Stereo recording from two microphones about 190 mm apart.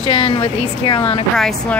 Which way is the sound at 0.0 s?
30° left (ahead or behind).